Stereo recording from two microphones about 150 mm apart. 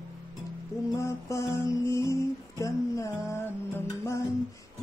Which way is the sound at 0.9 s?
20° left (ahead or behind).